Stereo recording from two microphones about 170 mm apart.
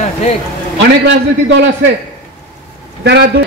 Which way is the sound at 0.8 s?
90° right.